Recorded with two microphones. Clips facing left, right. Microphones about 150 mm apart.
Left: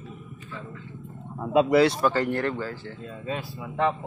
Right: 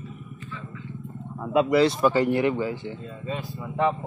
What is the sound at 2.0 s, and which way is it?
Speech, 10° right (ahead or behind).